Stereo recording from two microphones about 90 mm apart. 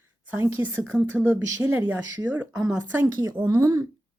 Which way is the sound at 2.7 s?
35° right (ahead or behind).